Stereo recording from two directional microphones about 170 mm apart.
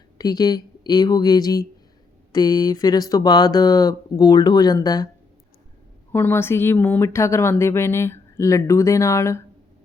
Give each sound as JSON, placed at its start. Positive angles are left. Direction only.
{"t": 0.2, "sound": "speech", "side_deg": 25}
{"t": 6.1, "sound": "a woman's voice", "side_deg": 15}